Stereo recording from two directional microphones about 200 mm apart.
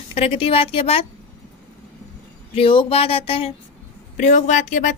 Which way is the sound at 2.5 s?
25° left (ahead or behind).